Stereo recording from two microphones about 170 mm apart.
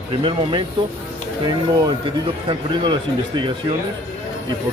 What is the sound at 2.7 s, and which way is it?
Speech, 30° right (ahead or behind).